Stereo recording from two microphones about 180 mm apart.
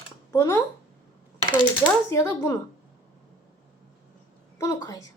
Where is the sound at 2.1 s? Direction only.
15° left (ahead or behind).